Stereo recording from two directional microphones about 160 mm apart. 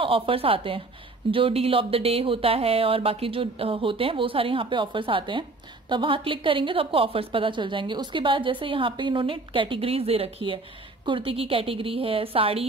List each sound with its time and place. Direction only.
0.0 s a woman's voice: 35° right (ahead or behind)